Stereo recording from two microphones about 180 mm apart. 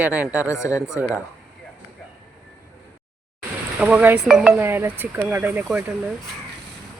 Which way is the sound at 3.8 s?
5° right (ahead or behind).